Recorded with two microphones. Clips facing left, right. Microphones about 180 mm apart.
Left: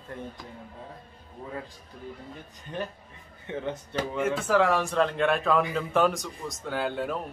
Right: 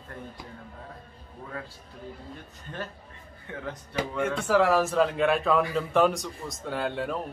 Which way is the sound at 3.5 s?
25° left (ahead or behind).